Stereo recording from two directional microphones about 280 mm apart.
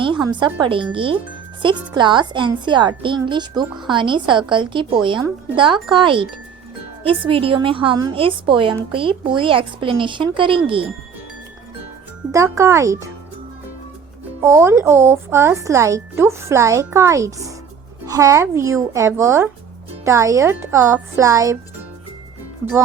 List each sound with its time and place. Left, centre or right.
0.0 s a woman's voice: centre
12.3 s a woman's voice: centre
14.4 s a woman's voice: centre